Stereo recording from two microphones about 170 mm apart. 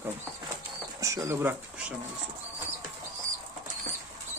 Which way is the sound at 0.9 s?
20° right (ahead or behind).